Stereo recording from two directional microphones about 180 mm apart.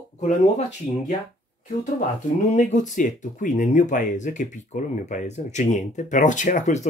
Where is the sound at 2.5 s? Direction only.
40° left (ahead or behind).